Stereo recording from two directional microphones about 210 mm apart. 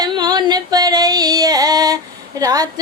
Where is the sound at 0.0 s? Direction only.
20° right (ahead or behind).